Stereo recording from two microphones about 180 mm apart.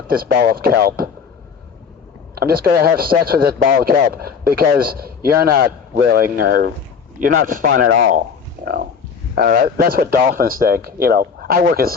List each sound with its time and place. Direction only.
0.1 s a man's voice: 60° right (ahead or behind)
2.3 s a man's voice: 60° right (ahead or behind)
8.6 s roaring cats: 60° right (ahead or behind)
9.3 s a man's voice: 55° right (ahead or behind)